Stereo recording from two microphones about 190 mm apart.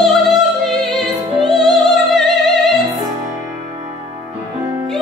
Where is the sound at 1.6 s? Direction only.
20° right (ahead or behind).